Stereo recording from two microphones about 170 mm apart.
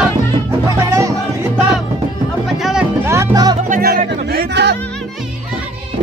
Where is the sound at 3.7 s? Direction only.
60° right (ahead or behind); by 4.8 s 80° right.